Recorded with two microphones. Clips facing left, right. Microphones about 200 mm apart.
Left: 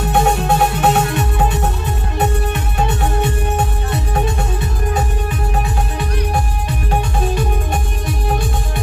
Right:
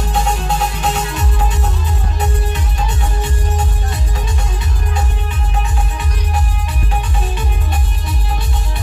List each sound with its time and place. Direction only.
0.1 s music: 60° left (ahead or behind)